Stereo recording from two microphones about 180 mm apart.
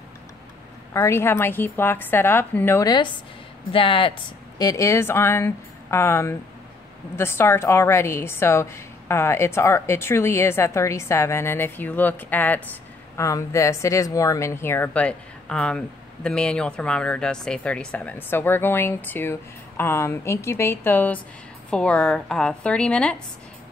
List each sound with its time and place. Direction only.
0.9 s speech: 15° left (ahead or behind)
4.6 s a woman's voice: 20° left (ahead or behind)